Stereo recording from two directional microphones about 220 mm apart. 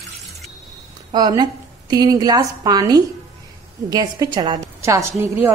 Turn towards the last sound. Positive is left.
turn(degrees=-10)  # may be behind; listen again after turning